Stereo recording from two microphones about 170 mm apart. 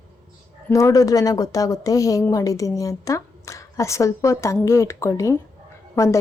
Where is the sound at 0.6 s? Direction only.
20° left (ahead or behind).